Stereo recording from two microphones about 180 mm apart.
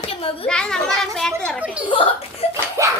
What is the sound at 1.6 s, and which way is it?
Speech, 5° right (ahead or behind).